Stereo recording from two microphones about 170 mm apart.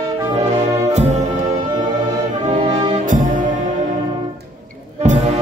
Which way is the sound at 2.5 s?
50° right (ahead or behind).